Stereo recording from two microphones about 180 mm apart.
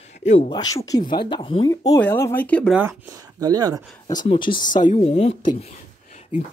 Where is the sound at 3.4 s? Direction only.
20° right (ahead or behind).